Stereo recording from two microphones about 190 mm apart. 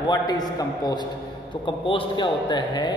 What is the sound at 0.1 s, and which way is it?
A man's voice, 20° left (ahead or behind).